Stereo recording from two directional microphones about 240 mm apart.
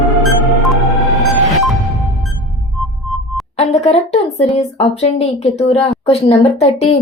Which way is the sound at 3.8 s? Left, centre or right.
Left.